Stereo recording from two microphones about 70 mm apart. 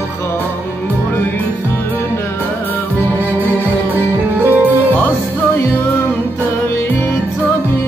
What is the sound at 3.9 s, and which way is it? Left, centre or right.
Music, right.